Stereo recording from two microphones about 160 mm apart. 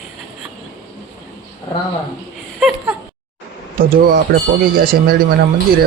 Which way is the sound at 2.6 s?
5° right (ahead or behind).